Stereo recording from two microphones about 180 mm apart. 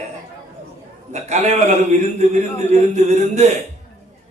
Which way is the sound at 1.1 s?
40° right (ahead or behind).